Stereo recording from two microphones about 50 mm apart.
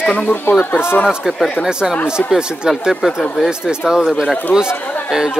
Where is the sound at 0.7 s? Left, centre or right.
Left.